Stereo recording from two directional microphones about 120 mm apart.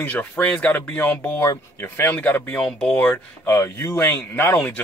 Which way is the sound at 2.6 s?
5° left (ahead or behind).